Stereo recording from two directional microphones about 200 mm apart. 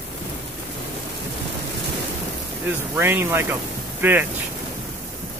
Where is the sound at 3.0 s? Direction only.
10° right (ahead or behind).